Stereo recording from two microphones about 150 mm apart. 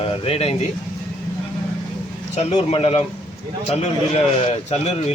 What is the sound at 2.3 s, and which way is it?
A man's voice, 45° left (ahead or behind).